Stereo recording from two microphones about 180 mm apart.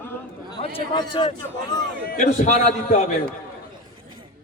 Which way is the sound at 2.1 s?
45° left (ahead or behind).